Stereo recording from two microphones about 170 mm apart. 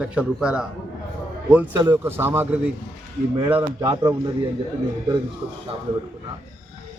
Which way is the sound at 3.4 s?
30° right (ahead or behind).